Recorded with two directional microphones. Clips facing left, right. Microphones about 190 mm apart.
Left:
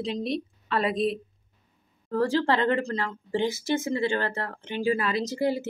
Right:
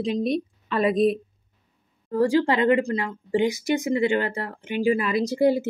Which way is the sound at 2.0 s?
15° right (ahead or behind).